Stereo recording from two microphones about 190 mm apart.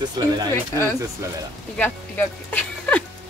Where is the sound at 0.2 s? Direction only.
20° right (ahead or behind).